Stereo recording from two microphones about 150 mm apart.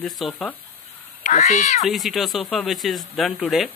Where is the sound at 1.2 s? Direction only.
50° left (ahead or behind).